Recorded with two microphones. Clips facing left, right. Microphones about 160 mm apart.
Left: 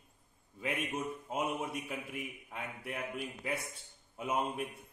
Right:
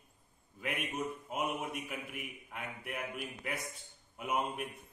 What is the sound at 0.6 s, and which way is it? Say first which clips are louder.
A man's voice: left 1 dB; 30° left (ahead or behind).